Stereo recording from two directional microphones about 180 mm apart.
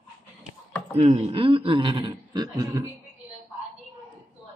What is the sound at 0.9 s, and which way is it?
Speech, 35° right (ahead or behind).